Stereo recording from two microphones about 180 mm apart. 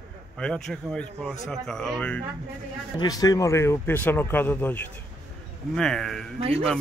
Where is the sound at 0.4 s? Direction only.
5° left (ahead or behind).